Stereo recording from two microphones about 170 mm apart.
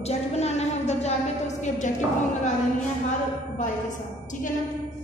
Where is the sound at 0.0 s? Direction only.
40° left (ahead or behind).